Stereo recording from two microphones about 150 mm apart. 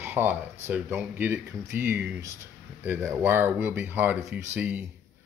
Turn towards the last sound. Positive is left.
turn(degrees=-10)  # may be behind; listen again after turning